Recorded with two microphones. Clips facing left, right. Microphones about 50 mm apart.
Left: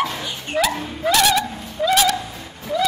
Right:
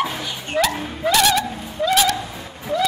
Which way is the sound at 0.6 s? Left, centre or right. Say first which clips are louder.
Even; centre.